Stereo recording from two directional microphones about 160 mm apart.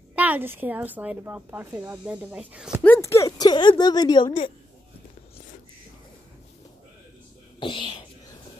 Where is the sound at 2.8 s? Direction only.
15° left (ahead or behind); by 4.5 s 30° left (ahead or behind).